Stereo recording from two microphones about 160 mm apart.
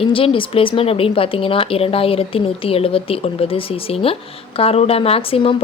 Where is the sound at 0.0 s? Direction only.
35° left (ahead or behind).